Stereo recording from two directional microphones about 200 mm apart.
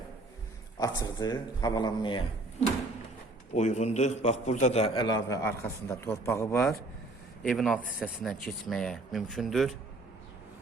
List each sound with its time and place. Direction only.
0.8 s a man's voice: 20° left (ahead or behind)
3.5 s a man's voice: 35° left (ahead or behind); by 6.7 s 15° left (ahead or behind)
7.4 s speech: centre (ahead or behind)